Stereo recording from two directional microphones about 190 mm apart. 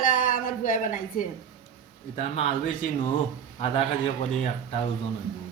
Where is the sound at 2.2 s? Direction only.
35° left (ahead or behind).